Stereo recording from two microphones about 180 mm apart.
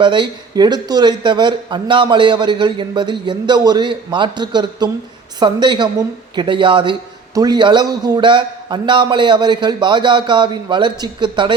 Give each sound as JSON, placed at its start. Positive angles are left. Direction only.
{"t": 0.0, "sound": "speech", "side_deg": -25}